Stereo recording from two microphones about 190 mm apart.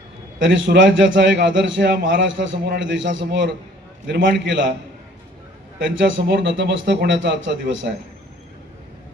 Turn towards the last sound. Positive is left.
turn(degrees=-75)  # may be behind; listen again after turning